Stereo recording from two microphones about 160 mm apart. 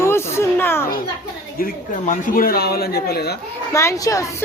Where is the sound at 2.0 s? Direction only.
60° left (ahead or behind); by 3.3 s 85° left.